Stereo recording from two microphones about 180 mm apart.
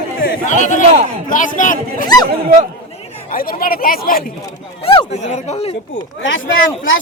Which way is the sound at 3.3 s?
55° left (ahead or behind).